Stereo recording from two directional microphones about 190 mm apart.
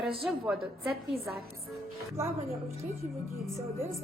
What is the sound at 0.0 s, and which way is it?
Speech, 30° right (ahead or behind).